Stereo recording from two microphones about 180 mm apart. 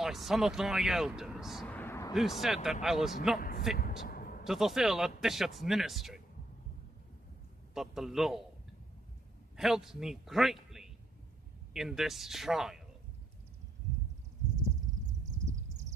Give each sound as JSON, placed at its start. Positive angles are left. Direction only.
{"t": 0.0, "sound": "speech", "side_deg": 0}
{"t": 1.8, "sound": "artillery fire", "side_deg": 15}
{"t": 2.1, "sound": "speech", "side_deg": 0}
{"t": 3.3, "sound": "speech", "side_deg": 55}
{"t": 4.0, "sound": "a sound", "side_deg": 55}
{"t": 4.5, "sound": "speech", "side_deg": 0}
{"t": 7.7, "sound": "speech", "side_deg": 0}
{"t": 9.6, "sound": "a man's voice", "side_deg": 0}